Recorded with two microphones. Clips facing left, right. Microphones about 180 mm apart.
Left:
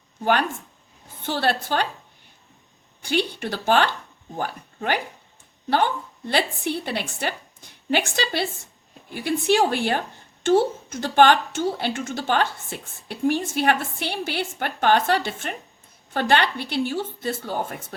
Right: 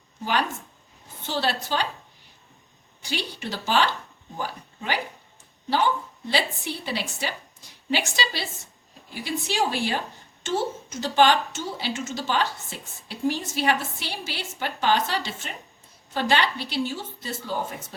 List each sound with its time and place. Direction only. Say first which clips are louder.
1.2 s a woman's voice: left 3 dB; 55° left (ahead or behind)
3.0 s a woman's voice: left 7 dB; 55° left (ahead or behind)